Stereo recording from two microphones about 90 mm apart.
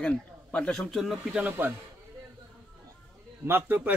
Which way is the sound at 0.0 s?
10° left (ahead or behind).